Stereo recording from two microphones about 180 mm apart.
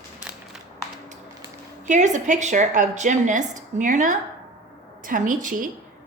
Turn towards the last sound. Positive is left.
turn(degrees=-45)  # may be behind; listen again after turning